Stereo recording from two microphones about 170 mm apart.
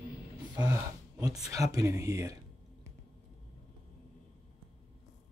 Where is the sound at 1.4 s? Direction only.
20° right (ahead or behind).